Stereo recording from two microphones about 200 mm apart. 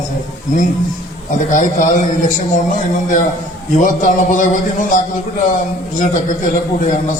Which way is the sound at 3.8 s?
40° left (ahead or behind).